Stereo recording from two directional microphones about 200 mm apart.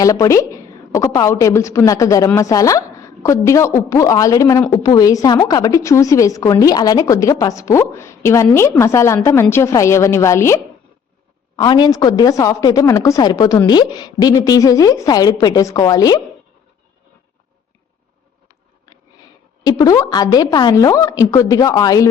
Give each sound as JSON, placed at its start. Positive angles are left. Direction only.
{"t": 0.0, "sound": "a woman's voice", "side_deg": 15}
{"t": 19.6, "sound": "a woman's voice", "side_deg": 15}